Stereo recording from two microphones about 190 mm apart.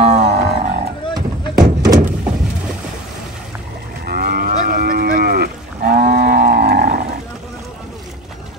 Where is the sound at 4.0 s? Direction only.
50° right (ahead or behind).